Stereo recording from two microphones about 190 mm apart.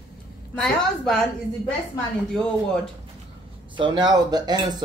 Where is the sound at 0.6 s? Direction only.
5° left (ahead or behind).